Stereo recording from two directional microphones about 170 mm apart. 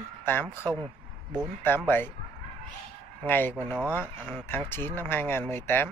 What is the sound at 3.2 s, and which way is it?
Speech, 10° left (ahead or behind).